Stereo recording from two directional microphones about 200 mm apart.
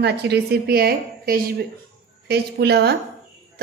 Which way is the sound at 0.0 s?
55° right (ahead or behind).